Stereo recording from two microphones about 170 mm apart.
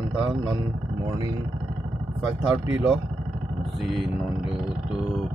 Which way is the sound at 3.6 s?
Centre (ahead or behind).